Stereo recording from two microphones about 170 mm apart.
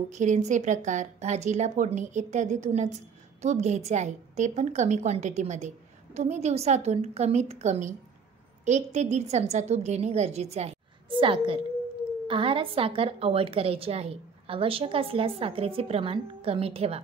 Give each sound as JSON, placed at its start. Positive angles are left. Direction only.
{"t": 0.1, "sound": "a woman's voice", "side_deg": -45}